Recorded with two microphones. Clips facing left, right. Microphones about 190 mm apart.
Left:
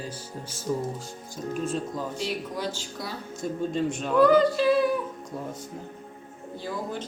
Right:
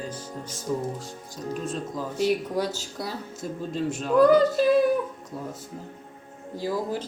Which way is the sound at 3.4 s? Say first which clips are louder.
Left 3 dB; 5° right (ahead or behind).